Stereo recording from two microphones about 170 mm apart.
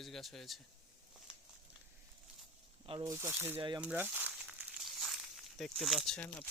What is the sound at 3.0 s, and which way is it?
Speech, 20° right (ahead or behind).